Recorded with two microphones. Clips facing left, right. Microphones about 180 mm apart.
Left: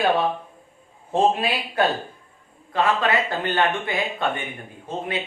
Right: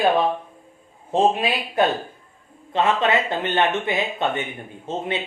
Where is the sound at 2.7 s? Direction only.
20° right (ahead or behind).